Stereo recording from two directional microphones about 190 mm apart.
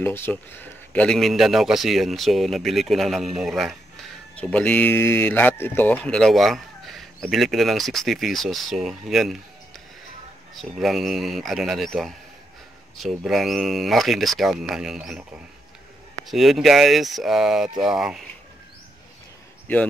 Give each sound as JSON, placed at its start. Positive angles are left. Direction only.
{"t": 0.0, "sound": "speech", "side_deg": 10}
{"t": 10.5, "sound": "speech", "side_deg": 0}
{"t": 16.3, "sound": "speech", "side_deg": 0}